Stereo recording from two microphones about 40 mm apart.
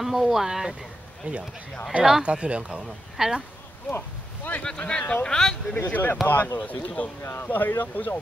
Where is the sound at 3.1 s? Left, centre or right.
Centre.